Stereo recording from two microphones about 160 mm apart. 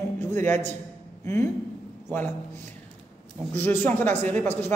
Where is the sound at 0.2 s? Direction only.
15° left (ahead or behind).